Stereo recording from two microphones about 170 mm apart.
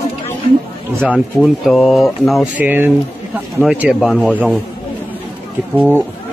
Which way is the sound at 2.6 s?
10° right (ahead or behind).